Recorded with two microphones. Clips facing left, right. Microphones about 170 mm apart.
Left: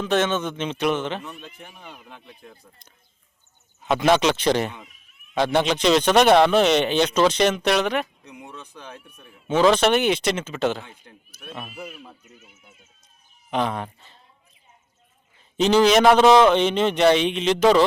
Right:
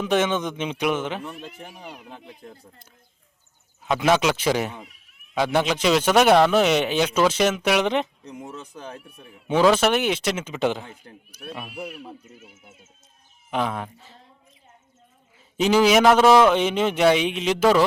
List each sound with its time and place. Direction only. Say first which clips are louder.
0.0 s a man's voice: even; 10° right (ahead or behind)
2.0 s speech: right 3 dB; 35° right (ahead or behind)
3.8 s speech: left 1 dB; centre (ahead or behind)
8.7 s speech: right 3 dB; 35° right (ahead or behind)
9.5 s speech: left 1 dB; 10° right (ahead or behind)
10.4 s a man's voice: even; 15° right (ahead or behind)
12.4 s speech: right 4 dB; 50° right (ahead or behind)
13.5 s speech: left 1 dB; 5° right (ahead or behind)
15.5 s a man's voice: left 1 dB; 10° right (ahead or behind)